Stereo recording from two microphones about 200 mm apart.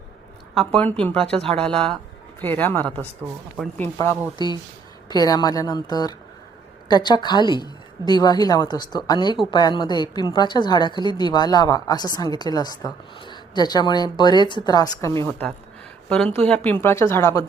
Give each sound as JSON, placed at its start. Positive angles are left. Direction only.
{"t": 0.7, "sound": "speech", "side_deg": 5}
{"t": 3.9, "sound": "a woman's voice", "side_deg": 15}
{"t": 16.0, "sound": "speech", "side_deg": 5}